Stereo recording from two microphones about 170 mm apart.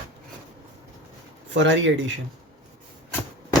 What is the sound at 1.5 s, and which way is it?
Speech, 90° right.